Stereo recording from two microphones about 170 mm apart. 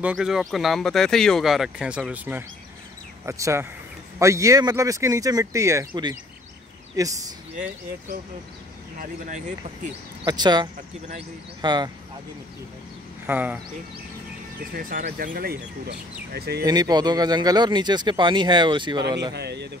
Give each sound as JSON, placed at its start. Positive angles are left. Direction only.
{"t": 0.0, "sound": "speech", "side_deg": -5}
{"t": 10.2, "sound": "speech", "side_deg": -25}
{"t": 13.3, "sound": "speech", "side_deg": -10}
{"t": 14.7, "sound": "speech", "side_deg": -55}
{"t": 16.6, "sound": "speech", "side_deg": -25}
{"t": 19.3, "sound": "speech", "side_deg": -80}